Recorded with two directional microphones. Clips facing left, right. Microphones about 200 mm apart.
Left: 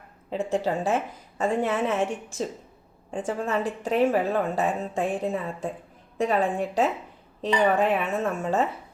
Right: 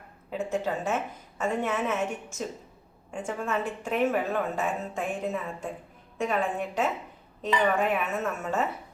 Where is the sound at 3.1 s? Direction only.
35° left (ahead or behind).